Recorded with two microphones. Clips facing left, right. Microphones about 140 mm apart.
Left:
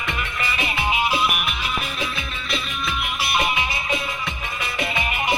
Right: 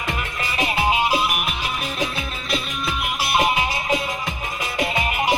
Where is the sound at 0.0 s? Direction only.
40° right (ahead or behind).